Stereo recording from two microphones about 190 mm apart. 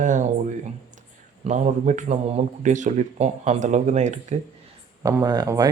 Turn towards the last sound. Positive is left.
turn(degrees=-20)  # may be behind; listen again after turning